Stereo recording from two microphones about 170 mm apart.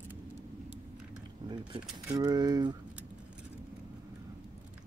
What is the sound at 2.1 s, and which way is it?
Speech, 25° right (ahead or behind).